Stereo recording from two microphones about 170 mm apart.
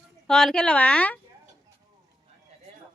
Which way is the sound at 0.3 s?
5° left (ahead or behind).